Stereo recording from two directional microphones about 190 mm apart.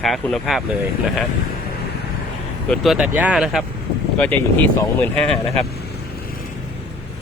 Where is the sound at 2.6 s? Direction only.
Centre (ahead or behind).